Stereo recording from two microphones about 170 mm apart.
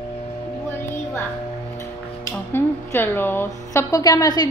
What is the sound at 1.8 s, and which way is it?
Speech, 15° left (ahead or behind).